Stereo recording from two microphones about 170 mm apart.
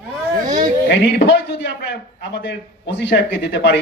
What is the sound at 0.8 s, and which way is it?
A man's voice, 90° left.